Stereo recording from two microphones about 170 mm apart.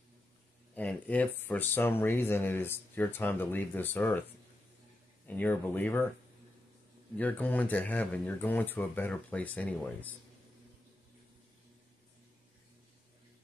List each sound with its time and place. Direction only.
0.7 s speech: 10° left (ahead or behind)
5.2 s speech: 10° left (ahead or behind)
7.2 s speech: 10° left (ahead or behind)